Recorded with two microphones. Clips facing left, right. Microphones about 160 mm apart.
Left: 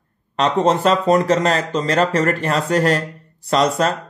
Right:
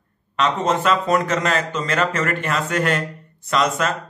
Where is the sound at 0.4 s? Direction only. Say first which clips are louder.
Left 4 dB; 35° left (ahead or behind).